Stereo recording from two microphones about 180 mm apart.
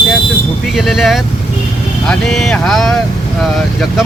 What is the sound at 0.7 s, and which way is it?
Speech, centre (ahead or behind).